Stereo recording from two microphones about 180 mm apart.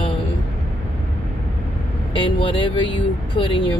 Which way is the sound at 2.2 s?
25° left (ahead or behind).